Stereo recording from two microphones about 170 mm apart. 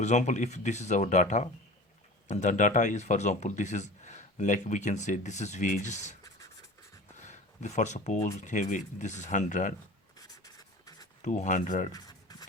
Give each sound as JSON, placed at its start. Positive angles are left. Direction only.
{"t": 0.0, "sound": "speech", "side_deg": 45}
{"t": 6.2, "sound": "a sound", "side_deg": 20}
{"t": 7.2, "sound": "a sound", "side_deg": 45}
{"t": 8.4, "sound": "speech", "side_deg": 45}
{"t": 10.2, "sound": "writing", "side_deg": 20}
{"t": 11.2, "sound": "speech", "side_deg": 45}
{"t": 11.9, "sound": "cutlery", "side_deg": 25}